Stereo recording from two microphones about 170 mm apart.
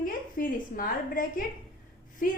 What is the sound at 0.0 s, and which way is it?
A woman's voice, 55° left (ahead or behind).